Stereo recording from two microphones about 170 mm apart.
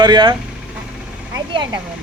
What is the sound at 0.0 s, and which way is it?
Speech, 25° right (ahead or behind).